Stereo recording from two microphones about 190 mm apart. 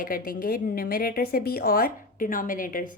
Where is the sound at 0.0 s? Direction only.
50° left (ahead or behind).